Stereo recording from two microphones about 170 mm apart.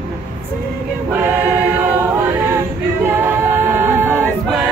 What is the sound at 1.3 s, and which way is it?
Choir, 10° right (ahead or behind).